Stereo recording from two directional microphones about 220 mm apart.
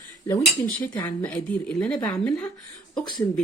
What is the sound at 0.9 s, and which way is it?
Speech, 5° left (ahead or behind).